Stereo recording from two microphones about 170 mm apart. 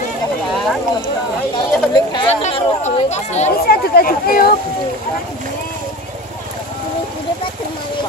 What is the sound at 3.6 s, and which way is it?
Speech, 65° left (ahead or behind).